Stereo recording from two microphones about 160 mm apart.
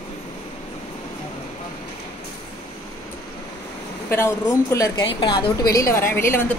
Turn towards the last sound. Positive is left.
turn(degrees=15)  # may be behind; listen again after turning